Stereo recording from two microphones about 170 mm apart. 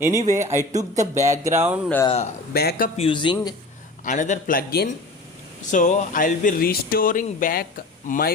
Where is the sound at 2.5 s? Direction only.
65° left (ahead or behind).